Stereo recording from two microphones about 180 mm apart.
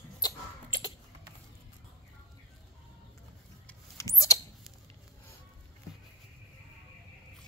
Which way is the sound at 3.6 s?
15° left (ahead or behind).